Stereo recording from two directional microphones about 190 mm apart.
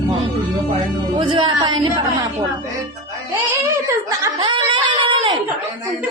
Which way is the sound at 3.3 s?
15° right (ahead or behind).